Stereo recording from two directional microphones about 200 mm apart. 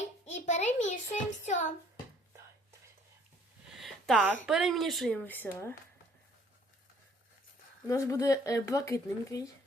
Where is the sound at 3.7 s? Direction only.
Centre (ahead or behind).